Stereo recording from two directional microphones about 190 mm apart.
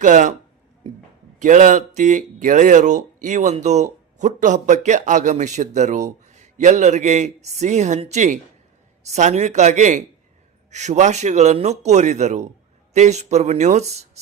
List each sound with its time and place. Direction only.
0.0 s speech: 40° right (ahead or behind)
1.4 s speech: 40° right (ahead or behind)